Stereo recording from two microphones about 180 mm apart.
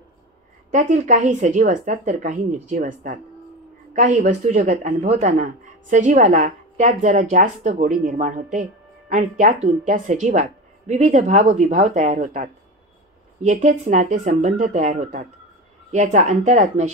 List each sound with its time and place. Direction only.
0.7 s a woman's voice: 40° right (ahead or behind)